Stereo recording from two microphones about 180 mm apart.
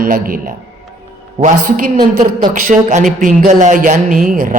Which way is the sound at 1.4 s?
45° right (ahead or behind).